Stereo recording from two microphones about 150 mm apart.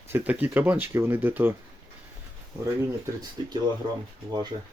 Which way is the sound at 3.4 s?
30° right (ahead or behind).